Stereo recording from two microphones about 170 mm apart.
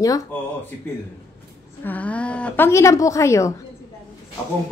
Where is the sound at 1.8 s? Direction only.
10° left (ahead or behind).